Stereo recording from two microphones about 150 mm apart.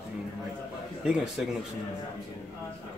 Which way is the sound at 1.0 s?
5° right (ahead or behind).